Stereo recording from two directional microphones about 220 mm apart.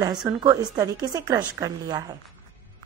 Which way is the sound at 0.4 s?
15° right (ahead or behind).